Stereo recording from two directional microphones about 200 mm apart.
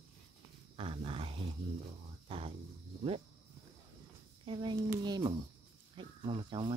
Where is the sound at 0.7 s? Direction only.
25° right (ahead or behind).